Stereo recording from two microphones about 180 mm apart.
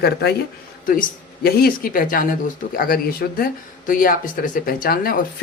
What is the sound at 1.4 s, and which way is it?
Speech, 55° left (ahead or behind).